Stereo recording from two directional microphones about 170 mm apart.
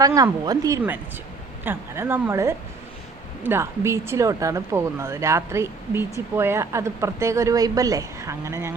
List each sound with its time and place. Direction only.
0.0 s speech: 20° right (ahead or behind)